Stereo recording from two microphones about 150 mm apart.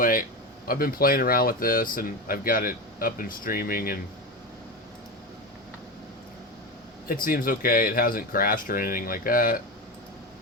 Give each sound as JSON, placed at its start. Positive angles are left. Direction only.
{"t": 0.0, "sound": "a sound", "side_deg": 70}
{"t": 0.7, "sound": "speech", "side_deg": 75}
{"t": 7.1, "sound": "speech", "side_deg": 70}